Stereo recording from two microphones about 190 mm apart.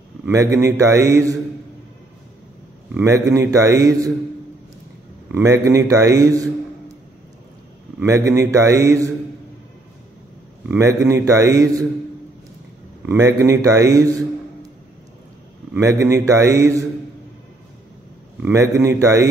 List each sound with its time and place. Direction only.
0.6 s a man's voice: 15° right (ahead or behind)
2.9 s a man's voice: 15° right (ahead or behind)
5.3 s a man's voice: 15° right (ahead or behind)
8.0 s a man's voice: 15° right (ahead or behind)
10.8 s a man's voice: 15° right (ahead or behind)
13.0 s a man's voice: 15° right (ahead or behind)
15.7 s a man's voice: 15° right (ahead or behind)
18.4 s a man's voice: 15° right (ahead or behind)